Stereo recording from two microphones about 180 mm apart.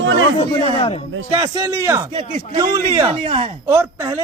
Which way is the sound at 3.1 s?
30° right (ahead or behind).